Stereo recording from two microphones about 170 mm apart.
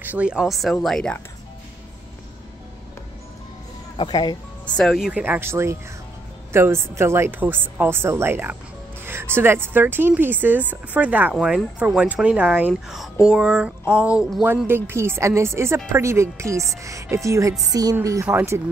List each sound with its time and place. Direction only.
0.0 s speech: 10° right (ahead or behind)
4.0 s speech: 25° left (ahead or behind)
4.7 s speech: centre (ahead or behind); by 18.6 s 15° right (ahead or behind)